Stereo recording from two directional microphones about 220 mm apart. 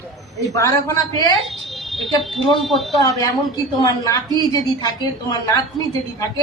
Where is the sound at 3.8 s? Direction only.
15° left (ahead or behind).